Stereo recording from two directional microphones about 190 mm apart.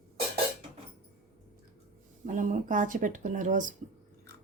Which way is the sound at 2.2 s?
45° right (ahead or behind).